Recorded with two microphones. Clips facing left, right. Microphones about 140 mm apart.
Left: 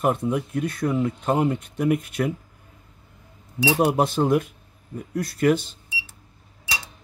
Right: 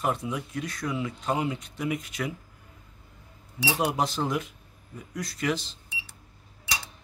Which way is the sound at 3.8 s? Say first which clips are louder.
Left 6 dB; 55° left (ahead or behind).